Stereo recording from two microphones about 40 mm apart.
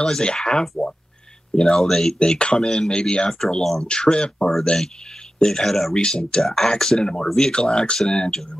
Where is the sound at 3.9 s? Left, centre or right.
Left.